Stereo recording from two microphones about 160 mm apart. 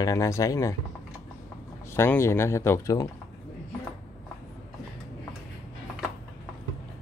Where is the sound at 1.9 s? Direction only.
15° left (ahead or behind).